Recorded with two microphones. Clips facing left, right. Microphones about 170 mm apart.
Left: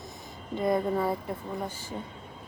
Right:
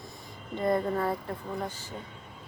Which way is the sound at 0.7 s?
5° left (ahead or behind).